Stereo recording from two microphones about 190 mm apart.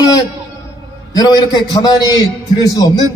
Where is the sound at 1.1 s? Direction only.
20° left (ahead or behind).